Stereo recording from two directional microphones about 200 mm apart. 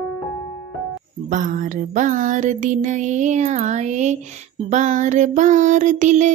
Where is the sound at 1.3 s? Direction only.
40° right (ahead or behind).